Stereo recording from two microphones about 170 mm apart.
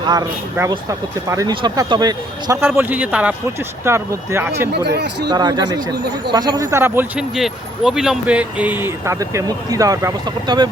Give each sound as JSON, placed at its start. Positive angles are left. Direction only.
{"t": 0.0, "sound": "speech", "side_deg": -25}
{"t": 4.7, "sound": "speech", "side_deg": -80}
{"t": 5.3, "sound": "speech", "side_deg": -25}